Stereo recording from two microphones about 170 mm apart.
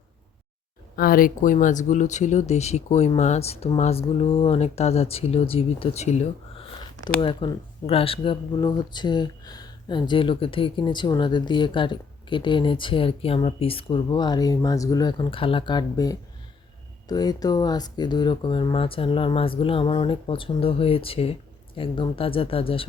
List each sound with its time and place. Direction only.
0.9 s speech: 60° left (ahead or behind); by 22.9 s 30° left (ahead or behind)